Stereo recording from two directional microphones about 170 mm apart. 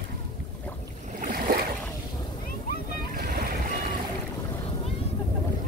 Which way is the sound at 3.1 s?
65° right (ahead or behind).